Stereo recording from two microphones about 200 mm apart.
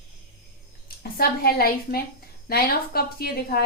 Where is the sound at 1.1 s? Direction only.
50° left (ahead or behind).